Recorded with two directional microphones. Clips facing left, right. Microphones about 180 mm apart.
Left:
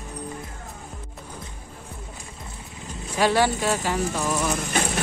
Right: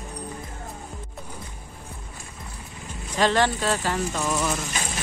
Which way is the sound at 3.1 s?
10° left (ahead or behind).